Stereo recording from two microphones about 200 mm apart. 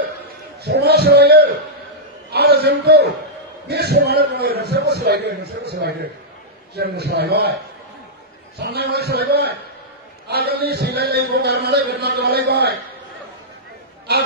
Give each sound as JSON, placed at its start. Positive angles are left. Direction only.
{"t": 0.7, "sound": "a man's voice", "side_deg": -50}
{"t": 2.3, "sound": "a sound", "side_deg": -55}
{"t": 3.6, "sound": "a man's voice", "side_deg": -55}
{"t": 8.5, "sound": "a man's voice", "side_deg": -55}